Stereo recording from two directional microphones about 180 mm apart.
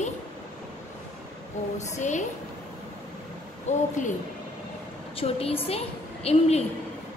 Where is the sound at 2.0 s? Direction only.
40° left (ahead or behind).